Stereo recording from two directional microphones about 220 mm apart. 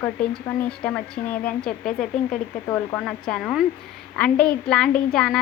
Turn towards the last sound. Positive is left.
turn(degrees=5)  # may be behind; listen again after turning